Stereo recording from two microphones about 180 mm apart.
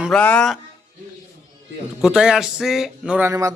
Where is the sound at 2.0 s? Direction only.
5° right (ahead or behind).